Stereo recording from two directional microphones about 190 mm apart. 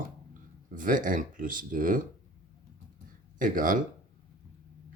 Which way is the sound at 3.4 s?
45° right (ahead or behind).